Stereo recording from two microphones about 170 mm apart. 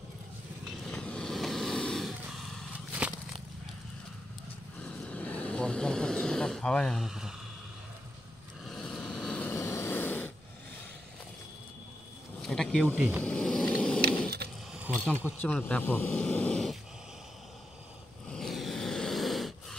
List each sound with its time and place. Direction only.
0.8 s vehicle: 5° left (ahead or behind)
4.8 s vehicle: 5° left (ahead or behind)
8.6 s vehicle: centre (ahead or behind)
12.4 s a sound: 5° left (ahead or behind)
12.9 s speech: 10° right (ahead or behind)
13.2 s vehicle: 5° left (ahead or behind)
14.4 s sewing machine: 70° right (ahead or behind)
15.2 s speech: 10° left (ahead or behind)
18.3 s a sound: centre (ahead or behind)